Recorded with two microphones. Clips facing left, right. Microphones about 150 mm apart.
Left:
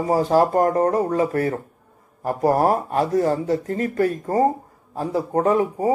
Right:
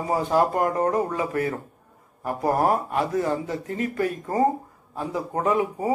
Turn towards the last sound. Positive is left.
turn(degrees=35)  # may be behind; listen again after turning